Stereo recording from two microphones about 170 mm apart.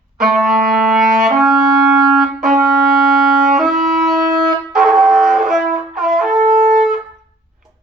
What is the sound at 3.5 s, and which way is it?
Music, centre (ahead or behind).